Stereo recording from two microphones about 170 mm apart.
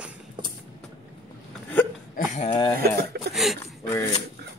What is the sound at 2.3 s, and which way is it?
Speech, 35° left (ahead or behind).